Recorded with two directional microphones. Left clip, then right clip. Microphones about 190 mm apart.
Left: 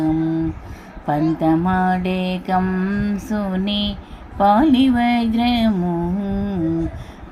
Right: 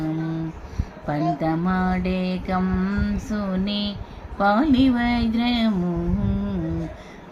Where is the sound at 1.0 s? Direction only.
15° left (ahead or behind).